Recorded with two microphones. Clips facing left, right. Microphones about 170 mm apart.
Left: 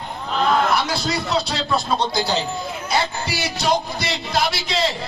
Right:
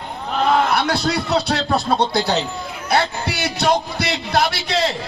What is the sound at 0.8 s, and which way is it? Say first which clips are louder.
A man's voice: right 3 dB; 60° right (ahead or behind).